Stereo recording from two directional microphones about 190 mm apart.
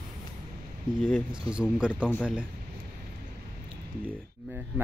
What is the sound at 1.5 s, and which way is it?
Speech, 5° right (ahead or behind).